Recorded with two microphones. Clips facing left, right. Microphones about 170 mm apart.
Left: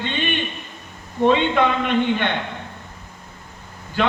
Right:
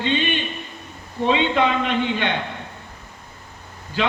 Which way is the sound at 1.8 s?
55° left (ahead or behind).